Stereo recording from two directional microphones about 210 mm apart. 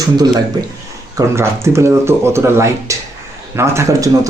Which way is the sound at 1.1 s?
15° right (ahead or behind).